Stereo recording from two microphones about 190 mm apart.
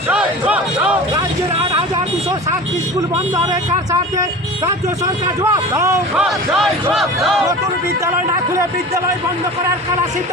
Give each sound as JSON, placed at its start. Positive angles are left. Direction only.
{"t": 0.1, "sound": "a sound", "side_deg": -5}
{"t": 4.2, "sound": "a man's voice", "side_deg": -15}
{"t": 6.9, "sound": "speech", "side_deg": 0}
{"t": 8.0, "sound": "a man's voice", "side_deg": -15}